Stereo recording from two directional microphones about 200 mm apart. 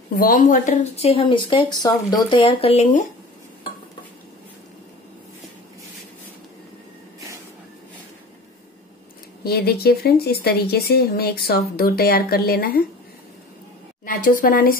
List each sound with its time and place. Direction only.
0.1 s speech: 45° left (ahead or behind)
9.4 s speech: 50° left (ahead or behind)
14.0 s speech: 45° left (ahead or behind)